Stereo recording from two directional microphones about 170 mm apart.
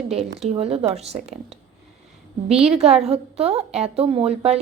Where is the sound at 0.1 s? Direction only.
35° right (ahead or behind).